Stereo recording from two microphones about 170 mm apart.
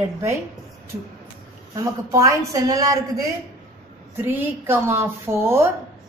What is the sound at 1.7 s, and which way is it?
A woman's voice, 20° right (ahead or behind).